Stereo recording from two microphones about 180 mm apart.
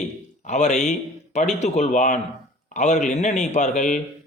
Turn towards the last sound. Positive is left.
turn(degrees=45)  # may be behind; listen again after turning